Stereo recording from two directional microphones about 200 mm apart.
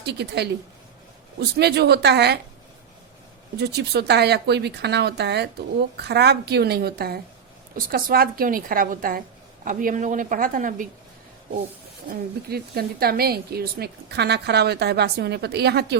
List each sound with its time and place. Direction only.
0.0 s speech: 55° right (ahead or behind)
3.6 s a woman's voice: 55° right (ahead or behind)
12.0 s speech: 50° right (ahead or behind)